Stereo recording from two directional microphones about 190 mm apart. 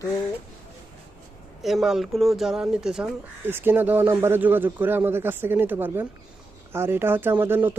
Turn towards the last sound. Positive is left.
turn(degrees=-10)  # may be behind; listen again after turning